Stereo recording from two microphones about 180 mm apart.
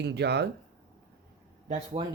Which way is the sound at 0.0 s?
70° right (ahead or behind).